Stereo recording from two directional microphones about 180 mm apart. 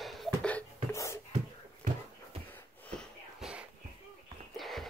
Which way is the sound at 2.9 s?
5° right (ahead or behind).